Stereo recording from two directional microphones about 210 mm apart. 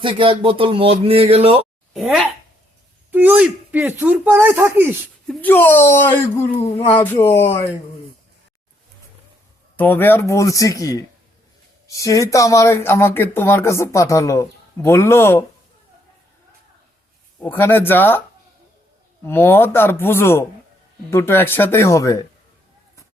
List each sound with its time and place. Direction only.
0.0 s a man's voice: 25° right (ahead or behind)
1.9 s speech: centre (ahead or behind)
5.3 s speech: 10° left (ahead or behind)
9.7 s speech: 10° left (ahead or behind)
17.4 s speech: 10° left (ahead or behind)
19.2 s speech: 10° left (ahead or behind)